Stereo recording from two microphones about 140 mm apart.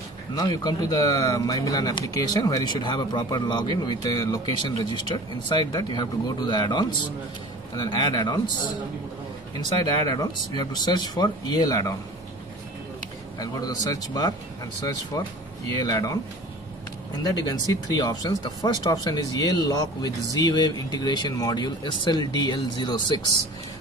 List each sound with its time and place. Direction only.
0.3 s speech: 30° left (ahead or behind)
10.0 s speech: 30° left (ahead or behind)
13.4 s speech: 30° left (ahead or behind)
17.5 s speech: 25° left (ahead or behind)